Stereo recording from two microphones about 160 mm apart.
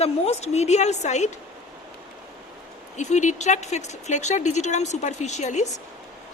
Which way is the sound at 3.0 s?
50° left (ahead or behind).